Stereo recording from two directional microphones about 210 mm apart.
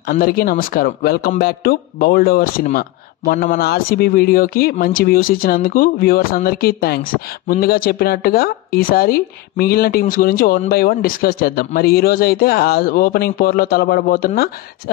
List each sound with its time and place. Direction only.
0.1 s speech: 45° left (ahead or behind)